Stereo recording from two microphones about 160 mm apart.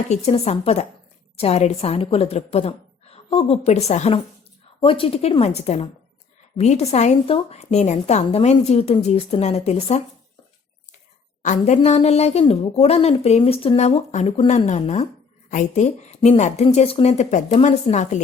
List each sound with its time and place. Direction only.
0.1 s a woman's voice: 40° left (ahead or behind)
11.4 s a woman's voice: 50° left (ahead or behind)